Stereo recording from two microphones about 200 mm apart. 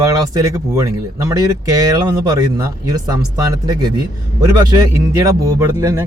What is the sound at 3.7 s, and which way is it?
A man's voice, 20° right (ahead or behind).